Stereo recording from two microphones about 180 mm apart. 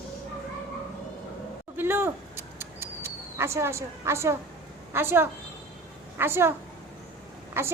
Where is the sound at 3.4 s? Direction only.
15° right (ahead or behind).